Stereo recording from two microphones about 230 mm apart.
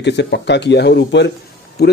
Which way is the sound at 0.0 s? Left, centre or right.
Left.